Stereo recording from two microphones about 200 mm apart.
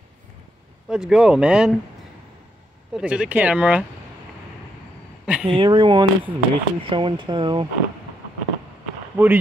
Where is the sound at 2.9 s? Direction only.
5° right (ahead or behind).